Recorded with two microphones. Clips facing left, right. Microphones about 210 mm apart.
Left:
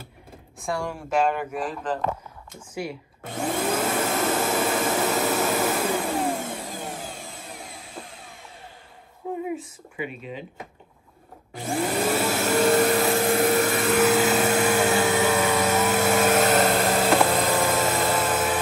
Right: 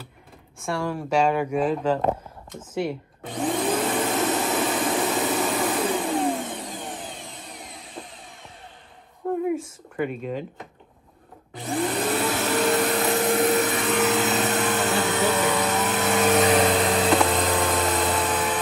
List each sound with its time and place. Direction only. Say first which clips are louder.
0.6 s speech: right 2 dB; centre (ahead or behind)
2.5 s vacuum cleaner: right 5 dB; centre (ahead or behind)
9.9 s speech: right 6 dB; 50° right (ahead or behind)
11.5 s vacuum cleaner: even; centre (ahead or behind)
14.9 s vehicle: left 2 dB; centre (ahead or behind)